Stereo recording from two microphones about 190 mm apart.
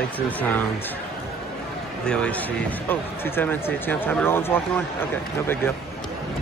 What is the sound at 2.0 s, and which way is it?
Speech, 5° left (ahead or behind).